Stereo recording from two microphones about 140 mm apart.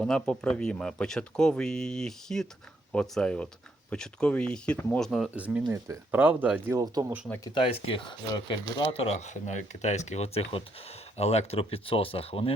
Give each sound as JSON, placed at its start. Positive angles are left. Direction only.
{"t": 0.0, "sound": "speech", "side_deg": 5}
{"t": 5.3, "sound": "speech", "side_deg": -10}
{"t": 6.7, "sound": "speech", "side_deg": -25}
{"t": 7.4, "sound": "speech", "side_deg": 40}
{"t": 8.9, "sound": "speech", "side_deg": 45}